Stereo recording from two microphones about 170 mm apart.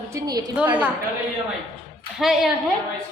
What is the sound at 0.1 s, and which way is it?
Speech, 20° right (ahead or behind).